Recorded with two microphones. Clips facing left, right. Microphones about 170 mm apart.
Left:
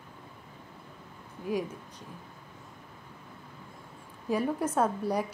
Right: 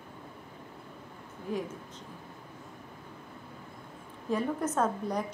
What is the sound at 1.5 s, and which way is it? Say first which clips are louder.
Speech: left 3 dB; 10° left (ahead or behind).